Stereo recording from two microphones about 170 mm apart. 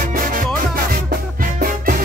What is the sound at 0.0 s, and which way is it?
Music, 55° right (ahead or behind).